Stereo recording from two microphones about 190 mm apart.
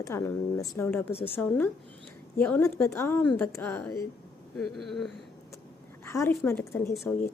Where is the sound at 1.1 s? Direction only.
30° left (ahead or behind).